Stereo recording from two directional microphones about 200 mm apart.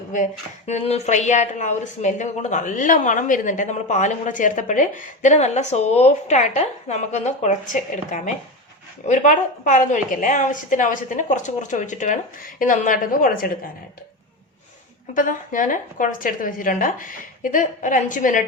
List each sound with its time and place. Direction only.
0.1 s a woman's voice: 40° left (ahead or behind)
15.1 s a woman's voice: 40° left (ahead or behind)